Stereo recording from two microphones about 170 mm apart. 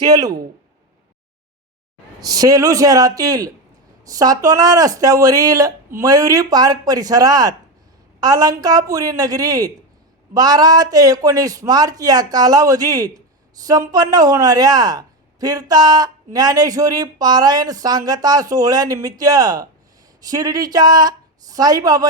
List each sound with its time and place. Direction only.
0.0 s a man's voice: 20° right (ahead or behind)
2.2 s a man's voice: 20° right (ahead or behind)